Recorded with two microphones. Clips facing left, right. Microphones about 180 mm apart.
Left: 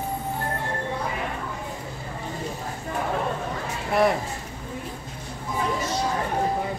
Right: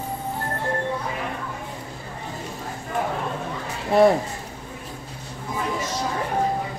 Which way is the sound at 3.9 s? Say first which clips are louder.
Right 5 dB; 25° right (ahead or behind).